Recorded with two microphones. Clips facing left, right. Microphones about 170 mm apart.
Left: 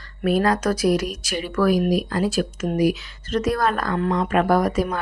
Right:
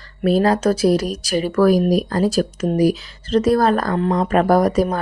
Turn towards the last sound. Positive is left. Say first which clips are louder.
# right 4 dB
turn(degrees=-35)  # may be behind; listen again after turning